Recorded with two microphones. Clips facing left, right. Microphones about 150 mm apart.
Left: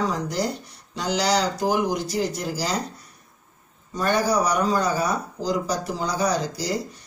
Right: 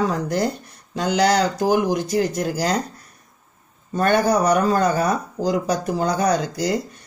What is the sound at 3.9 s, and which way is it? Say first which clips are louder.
Speech: right 4 dB; 55° right (ahead or behind).